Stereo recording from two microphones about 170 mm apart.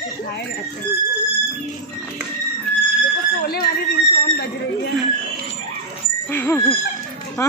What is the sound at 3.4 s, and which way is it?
Speech, 60° left (ahead or behind).